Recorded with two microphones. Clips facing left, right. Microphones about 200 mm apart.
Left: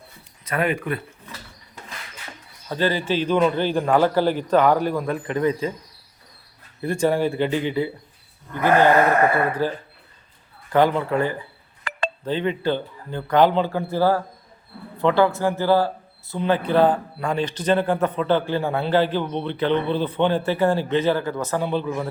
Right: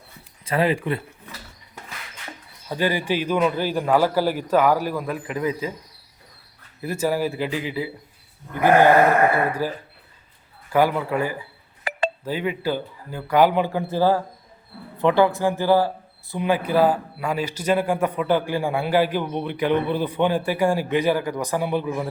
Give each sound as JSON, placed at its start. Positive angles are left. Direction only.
{"t": 0.4, "sound": "speech", "side_deg": -30}
{"t": 2.6, "sound": "speech", "side_deg": -10}
{"t": 6.8, "sound": "a man's voice", "side_deg": -5}
{"t": 9.5, "sound": "speech", "side_deg": -10}